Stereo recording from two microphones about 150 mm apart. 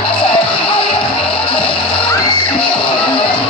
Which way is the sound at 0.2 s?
35° left (ahead or behind).